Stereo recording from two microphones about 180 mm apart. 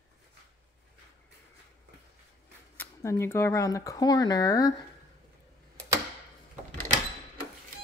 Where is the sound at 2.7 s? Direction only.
15° left (ahead or behind).